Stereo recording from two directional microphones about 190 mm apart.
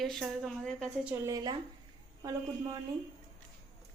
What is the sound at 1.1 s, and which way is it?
A man's voice, 15° right (ahead or behind).